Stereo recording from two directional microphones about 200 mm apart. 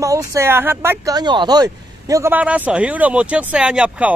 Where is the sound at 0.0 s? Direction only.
15° right (ahead or behind).